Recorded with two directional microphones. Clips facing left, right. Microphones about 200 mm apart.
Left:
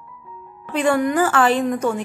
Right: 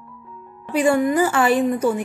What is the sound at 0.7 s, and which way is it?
Speech, 10° right (ahead or behind).